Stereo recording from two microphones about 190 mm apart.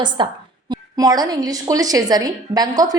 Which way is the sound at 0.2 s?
25° right (ahead or behind).